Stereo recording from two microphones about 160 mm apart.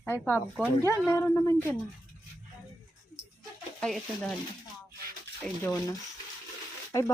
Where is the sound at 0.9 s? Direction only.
15° left (ahead or behind).